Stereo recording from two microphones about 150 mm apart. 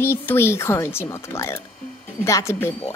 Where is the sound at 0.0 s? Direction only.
15° left (ahead or behind).